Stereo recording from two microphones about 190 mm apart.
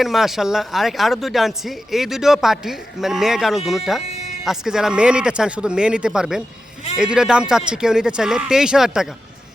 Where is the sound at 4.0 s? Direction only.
35° left (ahead or behind).